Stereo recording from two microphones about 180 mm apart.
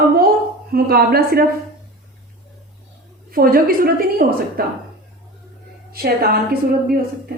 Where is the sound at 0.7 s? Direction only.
60° right (ahead or behind).